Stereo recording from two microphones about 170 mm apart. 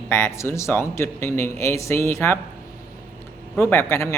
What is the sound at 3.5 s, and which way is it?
Speech, 15° left (ahead or behind).